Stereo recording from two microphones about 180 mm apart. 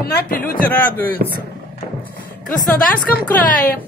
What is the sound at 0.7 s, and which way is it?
Speech, 10° left (ahead or behind).